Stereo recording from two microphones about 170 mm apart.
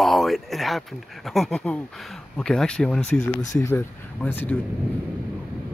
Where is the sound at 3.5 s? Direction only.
15° left (ahead or behind).